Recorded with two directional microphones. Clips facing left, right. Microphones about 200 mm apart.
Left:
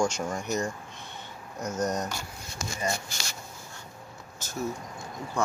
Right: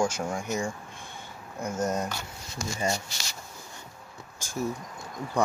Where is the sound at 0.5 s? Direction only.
10° right (ahead or behind).